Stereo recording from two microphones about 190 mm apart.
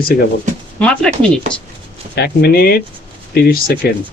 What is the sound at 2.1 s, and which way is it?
Speech, 55° left (ahead or behind).